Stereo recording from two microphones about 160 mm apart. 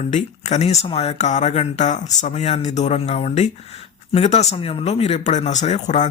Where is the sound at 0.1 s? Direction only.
45° left (ahead or behind).